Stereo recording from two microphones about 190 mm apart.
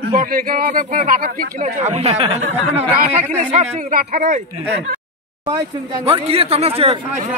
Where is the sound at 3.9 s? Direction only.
50° right (ahead or behind).